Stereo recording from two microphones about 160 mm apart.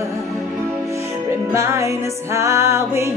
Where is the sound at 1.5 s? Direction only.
15° right (ahead or behind).